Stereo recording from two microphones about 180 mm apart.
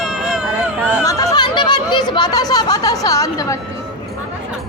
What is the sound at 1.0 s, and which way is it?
Speech, 20° left (ahead or behind).